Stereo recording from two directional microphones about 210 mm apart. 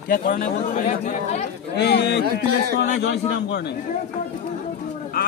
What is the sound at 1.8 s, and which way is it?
Speech, 50° left (ahead or behind).